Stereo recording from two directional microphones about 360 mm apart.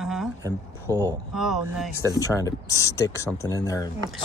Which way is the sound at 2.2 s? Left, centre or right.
Centre.